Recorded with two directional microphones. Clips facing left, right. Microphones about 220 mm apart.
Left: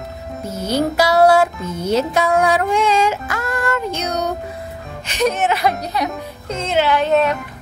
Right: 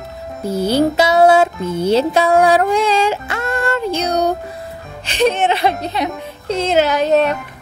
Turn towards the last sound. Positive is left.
turn(degrees=-40)  # may be behind; listen again after turning